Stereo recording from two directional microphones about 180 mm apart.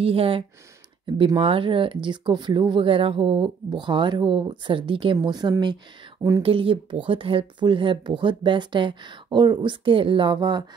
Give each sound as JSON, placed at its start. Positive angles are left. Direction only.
{"t": 0.0, "sound": "speech", "side_deg": -30}